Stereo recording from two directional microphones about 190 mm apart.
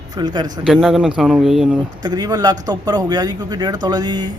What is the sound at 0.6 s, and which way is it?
Speech, 5° right (ahead or behind).